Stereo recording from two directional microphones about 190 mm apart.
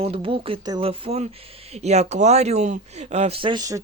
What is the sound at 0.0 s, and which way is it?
Speech, 30° right (ahead or behind).